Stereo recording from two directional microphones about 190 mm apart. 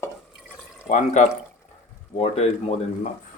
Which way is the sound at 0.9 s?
40° left (ahead or behind).